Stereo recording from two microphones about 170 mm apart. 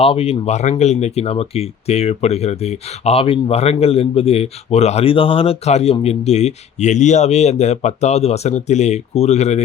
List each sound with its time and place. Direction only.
0.0 s speech: 35° left (ahead or behind)